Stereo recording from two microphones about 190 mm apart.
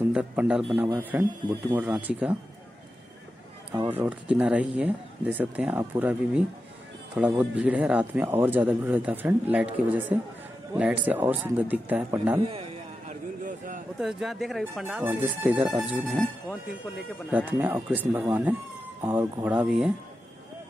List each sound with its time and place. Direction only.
0.1 s speech: 5° right (ahead or behind)
3.9 s speech: 10° right (ahead or behind)
13.1 s a sound: 45° right (ahead or behind)
13.9 s speech: centre (ahead or behind)
17.3 s speech: 10° right (ahead or behind)